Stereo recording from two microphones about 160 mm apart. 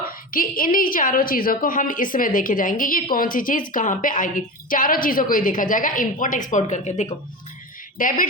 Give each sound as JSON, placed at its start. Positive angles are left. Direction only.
{"t": 0.1, "sound": "a woman's voice", "side_deg": 60}